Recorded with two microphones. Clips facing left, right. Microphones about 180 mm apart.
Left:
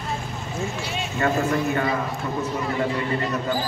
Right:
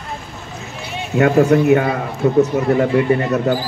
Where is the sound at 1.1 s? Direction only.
65° right (ahead or behind).